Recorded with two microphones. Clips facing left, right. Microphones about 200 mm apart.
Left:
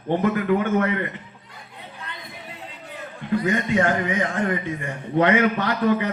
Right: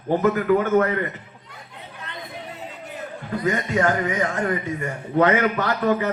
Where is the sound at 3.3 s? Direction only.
40° right (ahead or behind).